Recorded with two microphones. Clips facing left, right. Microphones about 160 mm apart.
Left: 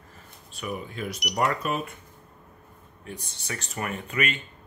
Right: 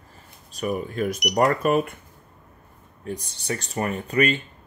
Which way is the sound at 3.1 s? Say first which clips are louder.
Right 8 dB; 35° right (ahead or behind).